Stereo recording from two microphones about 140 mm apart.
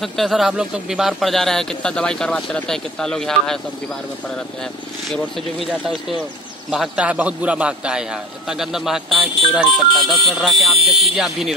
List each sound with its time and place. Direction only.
0.0 s a man's voice: centre (ahead or behind)
5.1 s a man's voice: centre (ahead or behind)
10.8 s speech: 45° right (ahead or behind)
11.1 s a man's voice: centre (ahead or behind)